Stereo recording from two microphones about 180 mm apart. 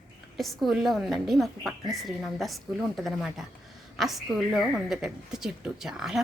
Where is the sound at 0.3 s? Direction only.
Centre (ahead or behind).